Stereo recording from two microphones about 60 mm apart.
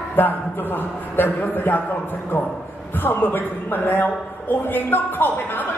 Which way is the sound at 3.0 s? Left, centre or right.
Left.